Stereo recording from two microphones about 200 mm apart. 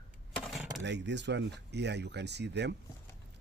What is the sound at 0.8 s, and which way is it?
Speech, 60° right (ahead or behind).